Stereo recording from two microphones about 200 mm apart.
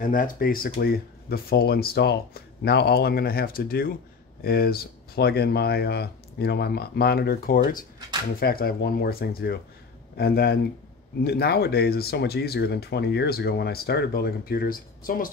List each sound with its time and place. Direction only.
0.0 s speech: 45° left (ahead or behind)